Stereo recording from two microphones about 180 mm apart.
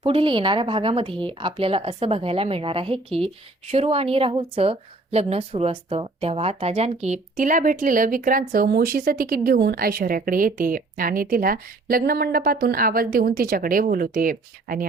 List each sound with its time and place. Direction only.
0.0 s a woman's voice: 30° right (ahead or behind); by 14.8 s 50° right (ahead or behind)